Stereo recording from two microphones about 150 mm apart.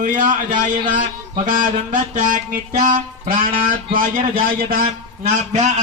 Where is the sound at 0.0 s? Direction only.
60° right (ahead or behind).